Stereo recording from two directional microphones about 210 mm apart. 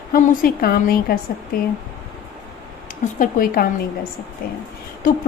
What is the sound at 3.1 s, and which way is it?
Speech, 40° left (ahead or behind).